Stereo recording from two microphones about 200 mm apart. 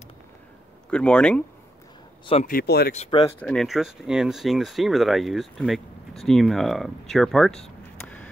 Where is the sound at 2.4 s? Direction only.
50° left (ahead or behind).